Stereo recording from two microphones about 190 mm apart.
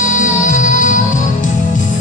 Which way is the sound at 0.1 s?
40° left (ahead or behind).